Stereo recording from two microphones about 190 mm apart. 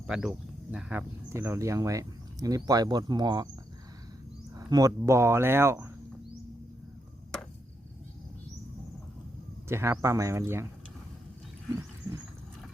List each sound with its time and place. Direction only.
0.1 s speech: 5° right (ahead or behind); by 3.5 s 20° right (ahead or behind)
4.5 s speech: 20° right (ahead or behind)
9.6 s speech: 15° right (ahead or behind)